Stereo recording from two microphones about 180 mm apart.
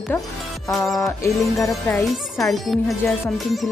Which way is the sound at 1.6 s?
10° left (ahead or behind).